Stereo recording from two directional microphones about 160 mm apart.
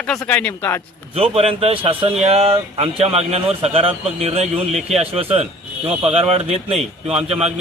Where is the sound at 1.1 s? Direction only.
35° right (ahead or behind).